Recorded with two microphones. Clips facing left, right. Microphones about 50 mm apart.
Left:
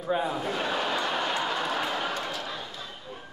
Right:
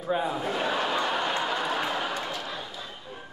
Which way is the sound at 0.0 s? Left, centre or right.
Centre.